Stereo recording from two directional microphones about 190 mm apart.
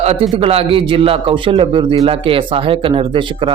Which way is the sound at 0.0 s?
30° right (ahead or behind).